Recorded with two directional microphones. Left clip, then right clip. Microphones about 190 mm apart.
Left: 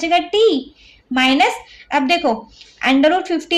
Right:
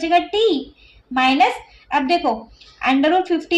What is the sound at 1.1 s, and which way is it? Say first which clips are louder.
A woman's voice: left 1 dB; 40° left (ahead or behind).